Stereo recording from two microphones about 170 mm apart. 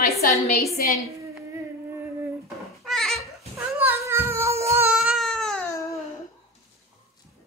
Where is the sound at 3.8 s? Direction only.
15° right (ahead or behind).